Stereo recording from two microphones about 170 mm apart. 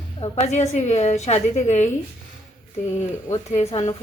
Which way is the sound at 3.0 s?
40° left (ahead or behind).